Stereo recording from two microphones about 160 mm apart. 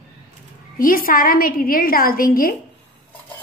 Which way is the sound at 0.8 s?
60° left (ahead or behind).